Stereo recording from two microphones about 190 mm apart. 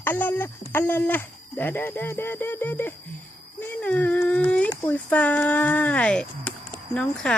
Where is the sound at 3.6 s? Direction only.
5° left (ahead or behind).